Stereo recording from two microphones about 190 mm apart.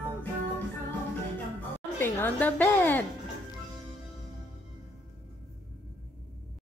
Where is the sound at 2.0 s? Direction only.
10° left (ahead or behind).